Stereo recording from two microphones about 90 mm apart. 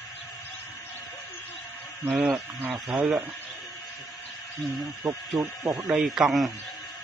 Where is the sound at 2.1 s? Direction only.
20° right (ahead or behind).